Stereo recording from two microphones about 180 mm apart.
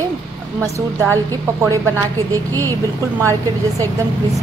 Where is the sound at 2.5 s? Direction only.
15° left (ahead or behind).